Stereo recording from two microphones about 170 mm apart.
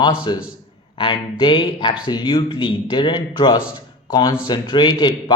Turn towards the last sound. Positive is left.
turn(degrees=25)  # may be behind; listen again after turning